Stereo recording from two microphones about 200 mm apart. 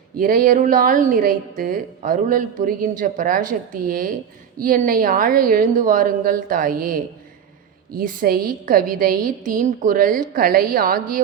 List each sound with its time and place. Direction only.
0.2 s a woman's voice: 45° right (ahead or behind)